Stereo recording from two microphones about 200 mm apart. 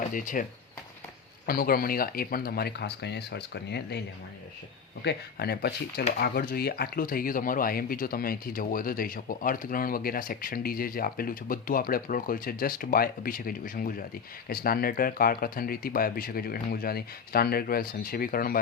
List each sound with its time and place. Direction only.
0.1 s speech: 40° left (ahead or behind)
1.5 s speech: 50° left (ahead or behind)
5.0 s speech: 50° left (ahead or behind)